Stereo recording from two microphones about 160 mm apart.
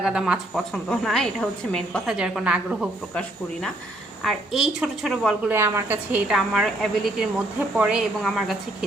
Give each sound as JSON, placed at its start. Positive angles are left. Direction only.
{"t": 0.0, "sound": "a woman's voice", "side_deg": -5}
{"t": 2.1, "sound": "a woman's voice", "side_deg": -5}
{"t": 4.2, "sound": "a woman's voice", "side_deg": 0}
{"t": 5.5, "sound": "a woman's voice", "side_deg": -15}